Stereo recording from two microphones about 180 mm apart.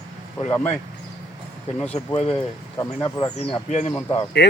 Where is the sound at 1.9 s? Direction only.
35° left (ahead or behind).